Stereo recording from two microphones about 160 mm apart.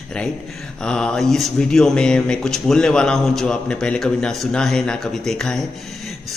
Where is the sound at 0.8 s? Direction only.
5° left (ahead or behind).